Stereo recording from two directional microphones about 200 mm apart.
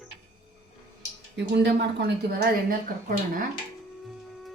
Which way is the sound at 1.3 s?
60° right (ahead or behind).